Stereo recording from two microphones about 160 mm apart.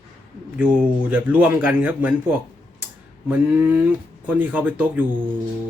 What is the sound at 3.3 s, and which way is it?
Speech, 10° right (ahead or behind).